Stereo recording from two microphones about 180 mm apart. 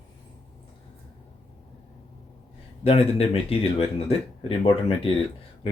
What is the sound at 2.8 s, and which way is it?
Speech, 35° left (ahead or behind).